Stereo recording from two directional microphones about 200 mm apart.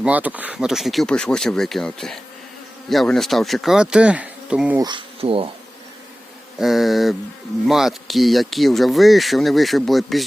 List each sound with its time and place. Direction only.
0.0 s speech: 5° right (ahead or behind)
4.8 s speech: 25° right (ahead or behind)
6.6 s speech: centre (ahead or behind)